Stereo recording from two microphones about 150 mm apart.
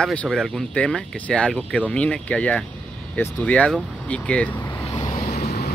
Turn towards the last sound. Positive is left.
turn(degrees=45)  # may be behind; listen again after turning